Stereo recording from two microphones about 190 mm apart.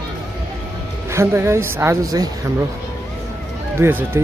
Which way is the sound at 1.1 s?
15° right (ahead or behind).